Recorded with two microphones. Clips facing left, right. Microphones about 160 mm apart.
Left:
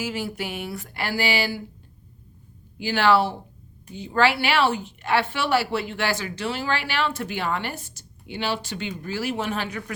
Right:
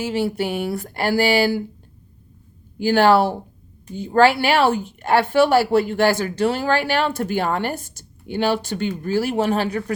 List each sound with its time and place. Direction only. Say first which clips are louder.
0.0 s speech: right 7 dB; 30° right (ahead or behind)
2.7 s speech: right 5 dB; 45° right (ahead or behind)